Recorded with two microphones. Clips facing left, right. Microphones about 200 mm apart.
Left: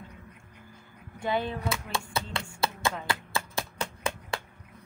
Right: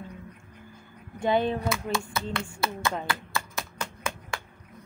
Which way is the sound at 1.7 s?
30° left (ahead or behind).